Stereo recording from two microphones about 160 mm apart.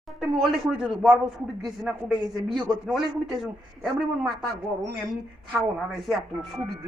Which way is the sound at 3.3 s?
Centre (ahead or behind).